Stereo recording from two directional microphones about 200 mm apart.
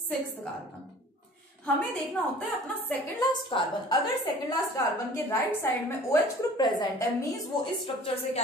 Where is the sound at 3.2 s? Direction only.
20° left (ahead or behind).